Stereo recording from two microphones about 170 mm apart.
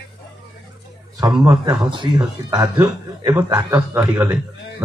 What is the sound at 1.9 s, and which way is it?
Speech, 25° right (ahead or behind).